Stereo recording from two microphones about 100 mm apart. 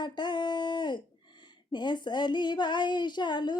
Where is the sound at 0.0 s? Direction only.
50° left (ahead or behind).